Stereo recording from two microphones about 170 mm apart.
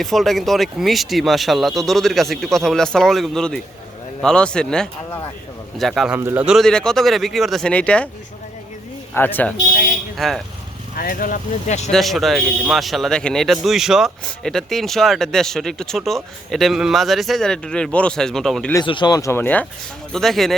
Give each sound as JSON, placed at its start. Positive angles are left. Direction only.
{"t": 0.0, "sound": "a man's voice", "side_deg": 0}
{"t": 6.1, "sound": "a man's voice", "side_deg": -10}
{"t": 9.1, "sound": "a man's voice", "side_deg": 10}
{"t": 10.9, "sound": "speech", "side_deg": 55}
{"t": 11.9, "sound": "a man's voice", "side_deg": 0}
{"t": 18.7, "sound": "a man's voice", "side_deg": 25}